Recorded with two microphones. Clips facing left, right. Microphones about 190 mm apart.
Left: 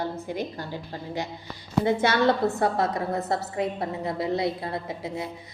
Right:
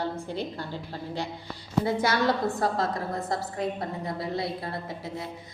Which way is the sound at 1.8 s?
25° left (ahead or behind).